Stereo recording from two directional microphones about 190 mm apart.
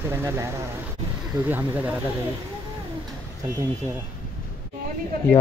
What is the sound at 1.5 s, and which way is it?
Speech, 10° right (ahead or behind).